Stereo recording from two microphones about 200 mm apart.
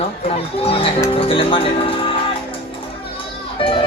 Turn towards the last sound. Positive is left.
turn(degrees=25)  # may be behind; listen again after turning